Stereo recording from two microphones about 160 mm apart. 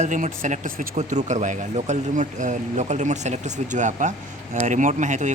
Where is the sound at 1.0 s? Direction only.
45° right (ahead or behind).